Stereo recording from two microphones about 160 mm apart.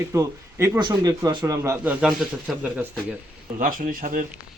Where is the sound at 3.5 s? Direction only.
55° right (ahead or behind).